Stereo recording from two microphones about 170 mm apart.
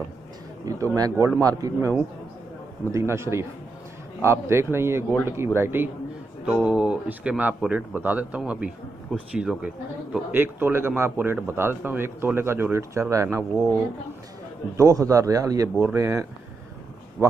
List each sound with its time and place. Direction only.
0.7 s a man's voice: 20° right (ahead or behind)
14.8 s a man's voice: 20° right (ahead or behind)